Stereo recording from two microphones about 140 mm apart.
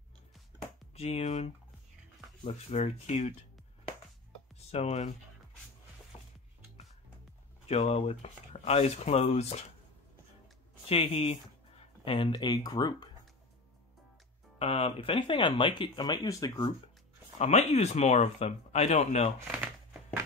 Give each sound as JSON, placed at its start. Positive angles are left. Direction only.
{"t": 0.9, "sound": "speech", "side_deg": 50}
{"t": 4.6, "sound": "speech", "side_deg": 50}
{"t": 7.6, "sound": "speech", "side_deg": 50}
{"t": 10.9, "sound": "speech", "side_deg": 45}
{"t": 14.6, "sound": "speech", "side_deg": 45}
{"t": 17.4, "sound": "speech", "side_deg": 50}